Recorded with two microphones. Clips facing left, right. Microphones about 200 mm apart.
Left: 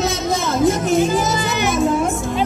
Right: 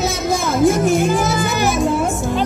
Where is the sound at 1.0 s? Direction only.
55° right (ahead or behind).